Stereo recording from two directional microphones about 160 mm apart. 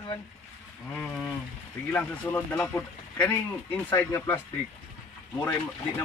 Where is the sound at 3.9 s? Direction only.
20° left (ahead or behind).